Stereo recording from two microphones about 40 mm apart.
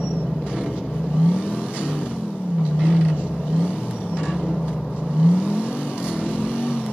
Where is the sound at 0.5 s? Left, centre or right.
Centre.